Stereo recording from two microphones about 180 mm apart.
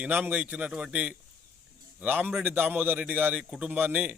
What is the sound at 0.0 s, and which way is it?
Speech, 10° right (ahead or behind).